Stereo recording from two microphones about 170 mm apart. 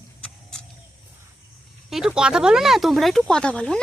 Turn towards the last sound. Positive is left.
turn(degrees=5)  # may be behind; listen again after turning